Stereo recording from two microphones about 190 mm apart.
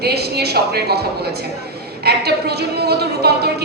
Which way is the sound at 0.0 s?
60° right (ahead or behind).